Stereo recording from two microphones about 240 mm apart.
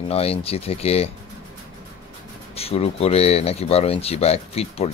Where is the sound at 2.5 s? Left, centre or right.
Left.